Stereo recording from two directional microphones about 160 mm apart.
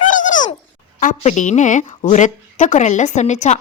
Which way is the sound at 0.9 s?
50° left (ahead or behind).